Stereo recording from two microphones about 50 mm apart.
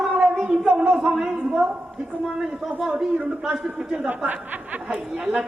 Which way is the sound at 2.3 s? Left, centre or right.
Centre.